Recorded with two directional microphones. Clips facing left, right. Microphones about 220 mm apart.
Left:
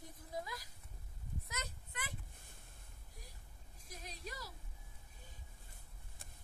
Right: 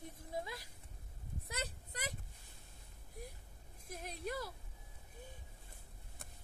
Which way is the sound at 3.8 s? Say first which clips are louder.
Right 7 dB; 55° right (ahead or behind).